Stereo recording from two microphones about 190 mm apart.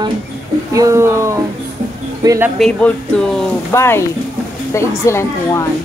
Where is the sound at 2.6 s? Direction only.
5° left (ahead or behind).